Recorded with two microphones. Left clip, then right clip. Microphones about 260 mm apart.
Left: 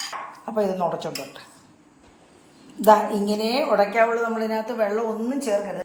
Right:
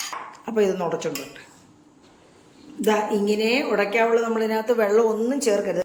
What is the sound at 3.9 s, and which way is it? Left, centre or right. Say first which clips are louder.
A woman's voice: right 1 dB; centre.